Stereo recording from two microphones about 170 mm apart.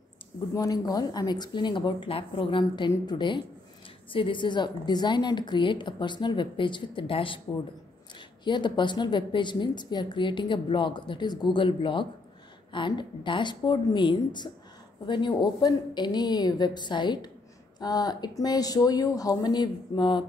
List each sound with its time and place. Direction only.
0.6 s a woman's voice: 20° left (ahead or behind)
8.5 s a woman's voice: 25° left (ahead or behind)